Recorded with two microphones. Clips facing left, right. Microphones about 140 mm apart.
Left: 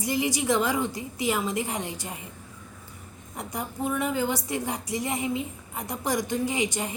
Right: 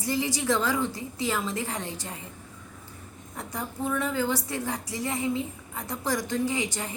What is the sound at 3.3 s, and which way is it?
A woman's voice, 15° left (ahead or behind).